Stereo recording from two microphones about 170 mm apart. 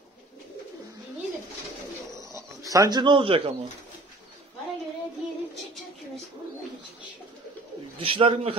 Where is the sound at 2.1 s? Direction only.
20° right (ahead or behind).